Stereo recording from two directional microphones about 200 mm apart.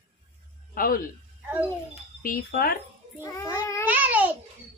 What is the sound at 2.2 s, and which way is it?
Speech, 45° left (ahead or behind).